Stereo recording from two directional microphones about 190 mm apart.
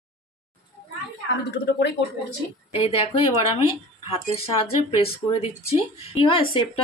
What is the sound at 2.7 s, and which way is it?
A woman's voice, 30° left (ahead or behind).